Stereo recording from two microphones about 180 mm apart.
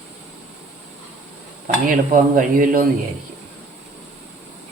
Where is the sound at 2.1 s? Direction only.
50° right (ahead or behind).